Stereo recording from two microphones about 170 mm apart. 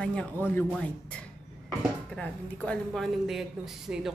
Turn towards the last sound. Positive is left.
turn(degrees=0)  # may be behind; listen again after turning